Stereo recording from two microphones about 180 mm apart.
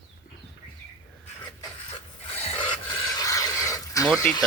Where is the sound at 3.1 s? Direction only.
20° left (ahead or behind).